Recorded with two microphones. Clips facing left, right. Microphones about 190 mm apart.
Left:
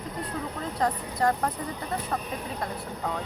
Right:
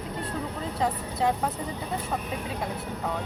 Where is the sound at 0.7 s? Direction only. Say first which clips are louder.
Left 1 dB; 5° right (ahead or behind).